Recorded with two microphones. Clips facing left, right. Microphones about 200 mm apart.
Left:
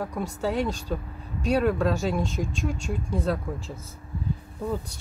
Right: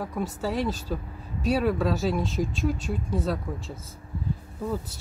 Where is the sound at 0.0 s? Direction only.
Centre (ahead or behind).